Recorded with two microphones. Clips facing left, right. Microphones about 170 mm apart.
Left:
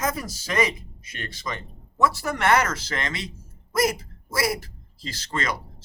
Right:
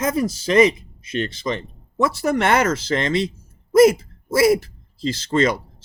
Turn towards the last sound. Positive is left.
turn(degrees=-25)  # may be behind; listen again after turning